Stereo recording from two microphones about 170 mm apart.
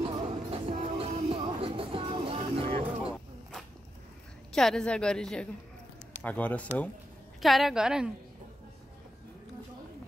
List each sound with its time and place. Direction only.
0.1 s music: 35° right (ahead or behind)
4.6 s a woman's voice: 5° left (ahead or behind)